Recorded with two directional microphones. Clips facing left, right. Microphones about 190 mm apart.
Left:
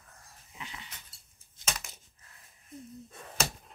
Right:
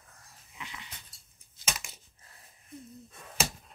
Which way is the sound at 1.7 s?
Centre (ahead or behind).